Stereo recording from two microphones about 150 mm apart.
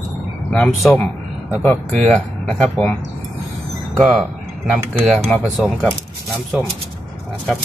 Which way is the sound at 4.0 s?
Centre (ahead or behind).